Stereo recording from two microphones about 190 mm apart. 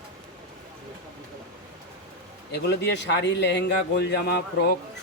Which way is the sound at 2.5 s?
65° left (ahead or behind).